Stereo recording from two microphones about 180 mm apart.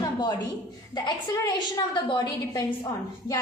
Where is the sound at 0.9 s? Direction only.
25° left (ahead or behind).